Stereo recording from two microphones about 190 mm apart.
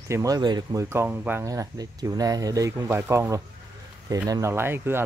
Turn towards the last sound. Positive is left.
turn(degrees=-10)  # may be behind; listen again after turning